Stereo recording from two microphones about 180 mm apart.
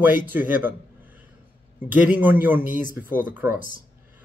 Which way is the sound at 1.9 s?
10° right (ahead or behind).